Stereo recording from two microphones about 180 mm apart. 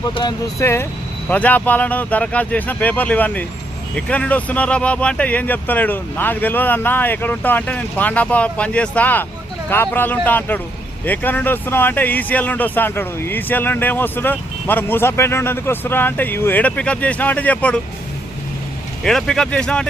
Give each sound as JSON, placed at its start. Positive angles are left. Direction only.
{"t": 0.1, "sound": "speech", "side_deg": 25}
{"t": 19.0, "sound": "speech", "side_deg": 5}